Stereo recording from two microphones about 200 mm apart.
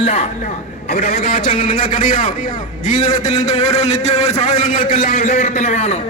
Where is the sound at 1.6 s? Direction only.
45° left (ahead or behind).